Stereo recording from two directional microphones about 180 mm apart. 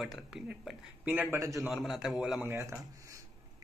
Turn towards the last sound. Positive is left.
turn(degrees=-15)  # may be behind; listen again after turning